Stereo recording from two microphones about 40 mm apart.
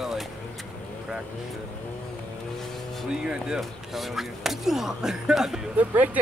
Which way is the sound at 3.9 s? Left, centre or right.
Centre.